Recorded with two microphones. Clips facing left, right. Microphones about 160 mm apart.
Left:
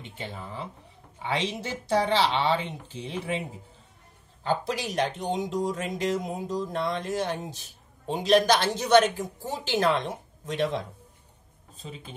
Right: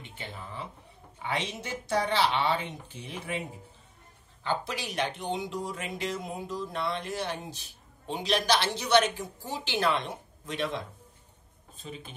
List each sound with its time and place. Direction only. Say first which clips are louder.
1.6 s speech: left 3 dB; 25° left (ahead or behind)
4.4 s speech: left 4 dB; 40° left (ahead or behind)